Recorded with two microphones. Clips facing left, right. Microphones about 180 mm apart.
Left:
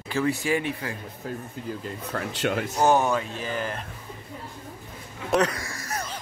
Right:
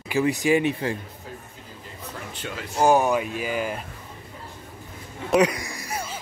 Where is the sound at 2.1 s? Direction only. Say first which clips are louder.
Left 8 dB; 75° left (ahead or behind).